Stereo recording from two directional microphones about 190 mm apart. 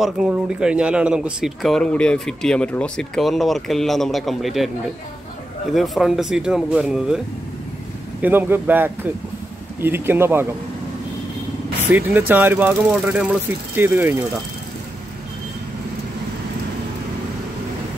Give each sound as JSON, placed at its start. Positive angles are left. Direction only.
{"t": 0.0, "sound": "speech", "side_deg": -5}
{"t": 5.7, "sound": "speech", "side_deg": 0}
{"t": 8.2, "sound": "speech", "side_deg": -10}
{"t": 11.9, "sound": "speech", "side_deg": -10}